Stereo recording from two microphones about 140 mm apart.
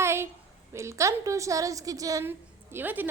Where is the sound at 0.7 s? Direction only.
20° right (ahead or behind).